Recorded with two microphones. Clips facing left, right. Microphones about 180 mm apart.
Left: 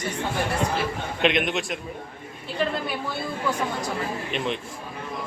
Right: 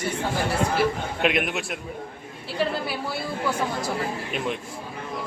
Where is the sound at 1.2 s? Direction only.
5° right (ahead or behind).